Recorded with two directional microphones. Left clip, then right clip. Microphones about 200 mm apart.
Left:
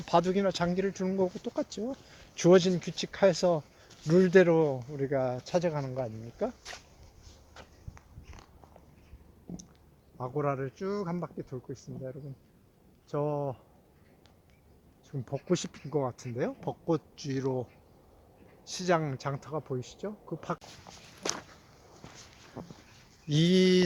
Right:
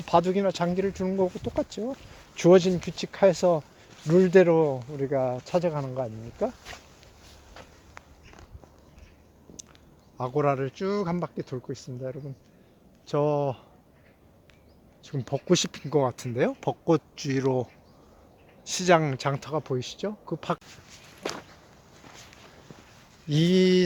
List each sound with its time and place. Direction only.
0.0 s speech: 5° right (ahead or behind)
10.2 s speech: 50° right (ahead or behind)
15.0 s speech: 50° right (ahead or behind)
20.9 s walk: centre (ahead or behind)
23.3 s speech: 5° right (ahead or behind)